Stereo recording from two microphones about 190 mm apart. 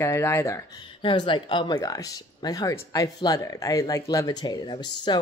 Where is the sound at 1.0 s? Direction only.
25° left (ahead or behind).